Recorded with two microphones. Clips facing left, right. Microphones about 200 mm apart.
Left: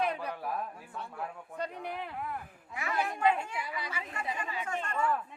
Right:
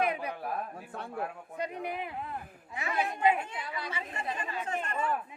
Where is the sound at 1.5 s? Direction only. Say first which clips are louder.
Right 2 dB; 15° right (ahead or behind).